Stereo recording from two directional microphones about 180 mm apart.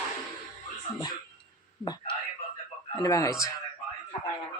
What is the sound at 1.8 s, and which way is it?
Speech, 25° left (ahead or behind).